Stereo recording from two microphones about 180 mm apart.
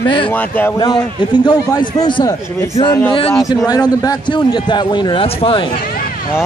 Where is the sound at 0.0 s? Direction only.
25° left (ahead or behind).